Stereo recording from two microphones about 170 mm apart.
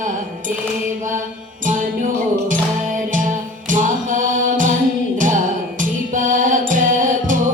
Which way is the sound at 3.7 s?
50° right (ahead or behind).